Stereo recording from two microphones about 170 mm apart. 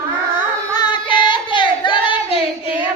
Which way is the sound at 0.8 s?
25° left (ahead or behind).